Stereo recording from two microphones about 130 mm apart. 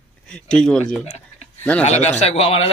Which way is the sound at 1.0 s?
55° left (ahead or behind).